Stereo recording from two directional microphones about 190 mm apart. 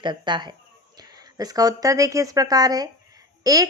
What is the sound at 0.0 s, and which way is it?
Speech, 25° right (ahead or behind).